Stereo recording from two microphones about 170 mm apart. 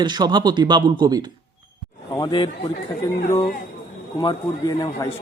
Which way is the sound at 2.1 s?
25° left (ahead or behind).